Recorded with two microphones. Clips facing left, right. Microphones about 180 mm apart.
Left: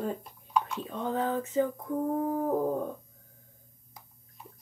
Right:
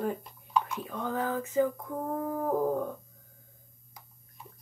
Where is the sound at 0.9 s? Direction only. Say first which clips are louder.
Left 2 dB; 25° left (ahead or behind).